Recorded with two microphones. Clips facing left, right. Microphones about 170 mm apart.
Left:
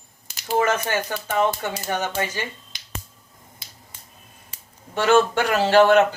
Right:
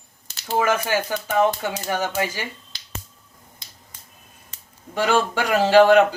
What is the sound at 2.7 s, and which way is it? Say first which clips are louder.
Finger snapping: even; 20° left (ahead or behind).